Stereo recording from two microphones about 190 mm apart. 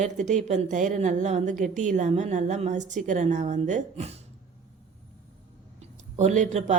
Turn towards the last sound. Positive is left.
turn(degrees=-40)  # may be behind; listen again after turning